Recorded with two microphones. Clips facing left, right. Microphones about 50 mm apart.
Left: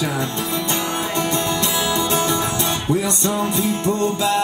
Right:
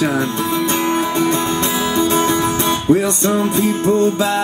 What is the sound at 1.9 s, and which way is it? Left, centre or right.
Music, right.